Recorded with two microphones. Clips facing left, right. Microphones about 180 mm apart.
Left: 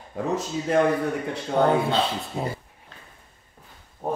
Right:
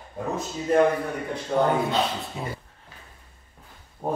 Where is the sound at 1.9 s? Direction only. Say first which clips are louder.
Left 1 dB; 30° left (ahead or behind).